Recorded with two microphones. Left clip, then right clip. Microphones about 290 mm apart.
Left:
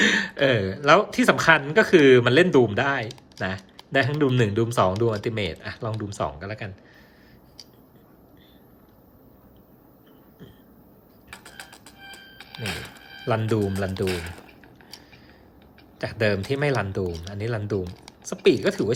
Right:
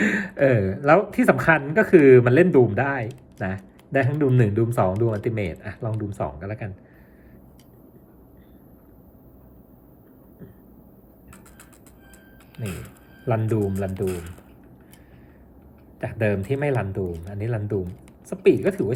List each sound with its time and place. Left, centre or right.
0.0 s speech: centre
13.2 s speech: centre
16.0 s speech: centre